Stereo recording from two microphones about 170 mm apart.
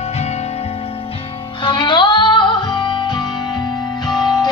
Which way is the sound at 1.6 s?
30° left (ahead or behind).